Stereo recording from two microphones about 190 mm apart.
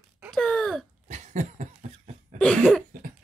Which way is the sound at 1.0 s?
40° right (ahead or behind).